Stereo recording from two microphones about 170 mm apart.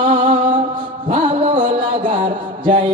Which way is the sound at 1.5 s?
50° right (ahead or behind).